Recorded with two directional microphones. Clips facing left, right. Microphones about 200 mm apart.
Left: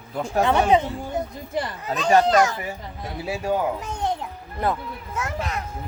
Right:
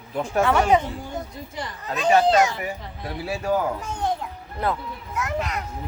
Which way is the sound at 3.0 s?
20° left (ahead or behind).